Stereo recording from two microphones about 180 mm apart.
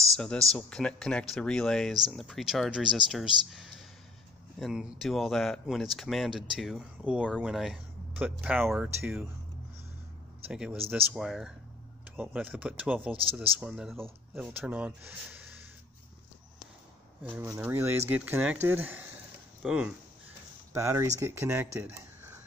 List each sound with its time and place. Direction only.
0.1 s speech: 5° left (ahead or behind)
10.5 s speech: 5° right (ahead or behind)
13.1 s speech: 30° right (ahead or behind)
13.6 s speech: 5° right (ahead or behind)
17.2 s speech: 15° right (ahead or behind)